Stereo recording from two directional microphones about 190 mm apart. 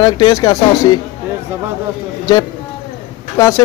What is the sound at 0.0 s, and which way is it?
Speech, 20° left (ahead or behind).